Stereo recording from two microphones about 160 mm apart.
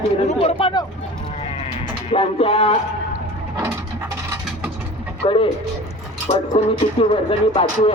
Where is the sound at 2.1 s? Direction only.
35° left (ahead or behind).